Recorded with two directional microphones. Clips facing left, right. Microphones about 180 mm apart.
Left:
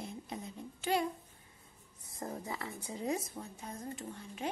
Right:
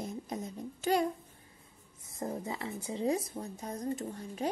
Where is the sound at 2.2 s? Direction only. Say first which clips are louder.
Right 4 dB; 20° right (ahead or behind); by 4.5 s 40° right (ahead or behind).